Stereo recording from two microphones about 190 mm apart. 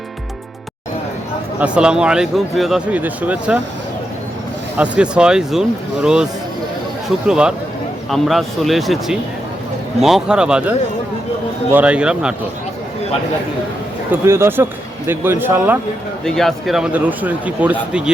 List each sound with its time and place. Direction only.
1.5 s speech: 5° right (ahead or behind)
4.8 s speech: 5° right (ahead or behind)
7.3 s speech: 5° right (ahead or behind)
14.1 s speech: 15° right (ahead or behind)
16.2 s speech: centre (ahead or behind)